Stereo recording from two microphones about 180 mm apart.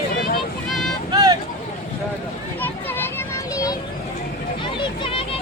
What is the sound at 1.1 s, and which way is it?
Vehicle, 20° right (ahead or behind).